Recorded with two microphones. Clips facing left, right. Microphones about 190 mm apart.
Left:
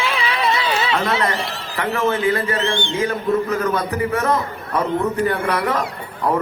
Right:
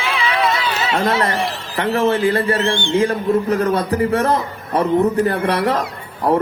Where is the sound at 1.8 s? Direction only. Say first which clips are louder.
Right 4 dB; 30° right (ahead or behind).